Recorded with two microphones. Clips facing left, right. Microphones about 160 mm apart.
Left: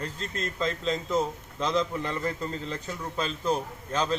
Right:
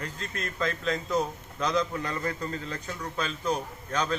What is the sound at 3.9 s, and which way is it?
Speech, 30° left (ahead or behind).